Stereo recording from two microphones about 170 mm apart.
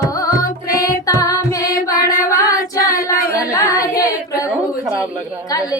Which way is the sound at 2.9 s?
55° left (ahead or behind).